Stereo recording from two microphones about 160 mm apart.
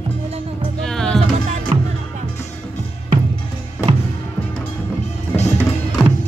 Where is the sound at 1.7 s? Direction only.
40° right (ahead or behind).